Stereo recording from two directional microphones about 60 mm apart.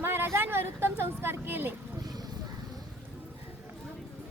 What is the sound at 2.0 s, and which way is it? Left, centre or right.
Vehicle, right.